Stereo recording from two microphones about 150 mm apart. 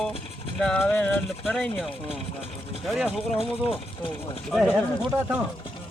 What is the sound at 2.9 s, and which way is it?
Speech, centre (ahead or behind).